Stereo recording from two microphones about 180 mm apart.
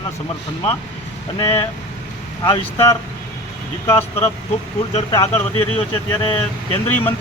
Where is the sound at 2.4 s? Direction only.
30° left (ahead or behind).